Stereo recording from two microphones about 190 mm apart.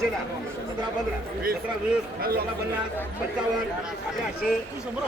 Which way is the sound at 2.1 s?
50° right (ahead or behind).